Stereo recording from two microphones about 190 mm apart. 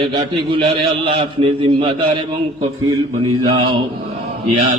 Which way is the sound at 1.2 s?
25° right (ahead or behind).